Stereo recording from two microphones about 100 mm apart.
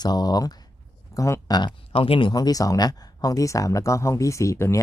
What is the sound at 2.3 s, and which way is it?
Speech, 40° left (ahead or behind).